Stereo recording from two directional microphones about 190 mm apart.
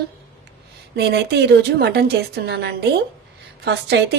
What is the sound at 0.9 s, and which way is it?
A woman's voice, 65° right (ahead or behind).